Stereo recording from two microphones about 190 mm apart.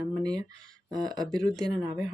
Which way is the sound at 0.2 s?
20° right (ahead or behind).